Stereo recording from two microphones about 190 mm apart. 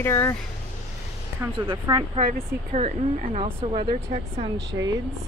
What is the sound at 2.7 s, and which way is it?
Speech, 35° right (ahead or behind).